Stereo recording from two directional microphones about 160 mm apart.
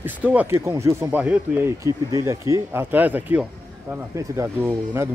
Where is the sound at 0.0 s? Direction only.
10° right (ahead or behind).